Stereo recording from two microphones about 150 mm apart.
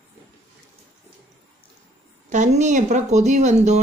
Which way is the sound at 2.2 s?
55° right (ahead or behind).